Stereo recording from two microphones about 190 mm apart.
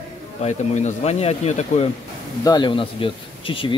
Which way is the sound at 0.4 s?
35° left (ahead or behind).